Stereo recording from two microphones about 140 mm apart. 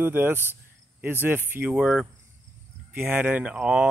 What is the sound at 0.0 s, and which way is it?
Speech, 15° right (ahead or behind).